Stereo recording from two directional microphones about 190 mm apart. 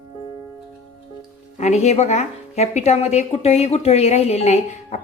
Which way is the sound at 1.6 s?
35° left (ahead or behind).